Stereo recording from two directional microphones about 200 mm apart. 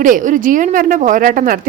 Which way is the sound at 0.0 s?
40° right (ahead or behind).